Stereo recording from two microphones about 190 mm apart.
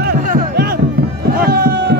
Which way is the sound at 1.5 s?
55° right (ahead or behind).